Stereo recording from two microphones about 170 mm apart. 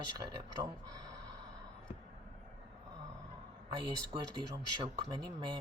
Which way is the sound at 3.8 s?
25° right (ahead or behind).